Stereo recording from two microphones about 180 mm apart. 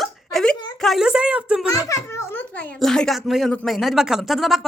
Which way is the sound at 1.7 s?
15° left (ahead or behind).